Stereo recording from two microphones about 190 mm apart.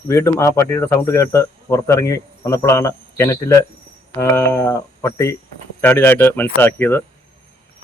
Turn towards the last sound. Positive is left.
turn(degrees=10)  # may be behind; listen again after turning